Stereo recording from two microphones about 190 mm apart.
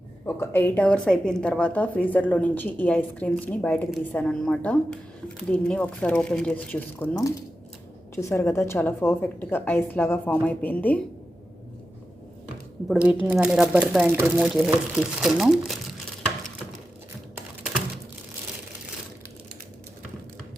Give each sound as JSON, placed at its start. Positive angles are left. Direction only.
{"t": 0.3, "sound": "a woman's voice", "side_deg": 10}
{"t": 12.9, "sound": "a woman's voice", "side_deg": -5}
{"t": 17.3, "sound": "typing", "side_deg": -5}